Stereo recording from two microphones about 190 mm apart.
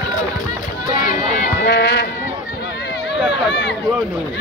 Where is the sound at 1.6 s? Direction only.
65° left (ahead or behind).